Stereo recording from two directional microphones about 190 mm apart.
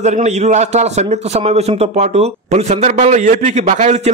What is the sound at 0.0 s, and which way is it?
A man's voice, 35° right (ahead or behind).